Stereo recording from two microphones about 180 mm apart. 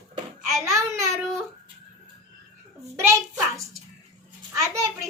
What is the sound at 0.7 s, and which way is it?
Child singing, 20° right (ahead or behind).